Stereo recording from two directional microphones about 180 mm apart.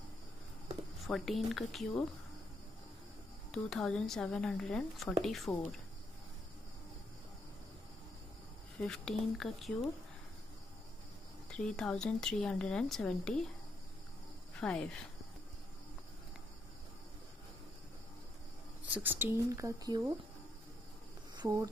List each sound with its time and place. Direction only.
1.0 s speech: centre (ahead or behind)
3.5 s speech: 5° left (ahead or behind)
8.8 s speech: 5° left (ahead or behind)
11.5 s speech: 5° left (ahead or behind)
14.5 s speech: 5° left (ahead or behind)
18.9 s speech: 10° right (ahead or behind)
21.4 s speech: 20° right (ahead or behind)